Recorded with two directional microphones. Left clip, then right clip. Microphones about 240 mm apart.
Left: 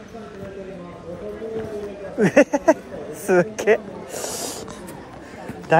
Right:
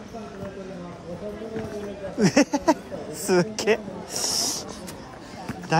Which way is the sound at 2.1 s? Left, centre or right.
Centre.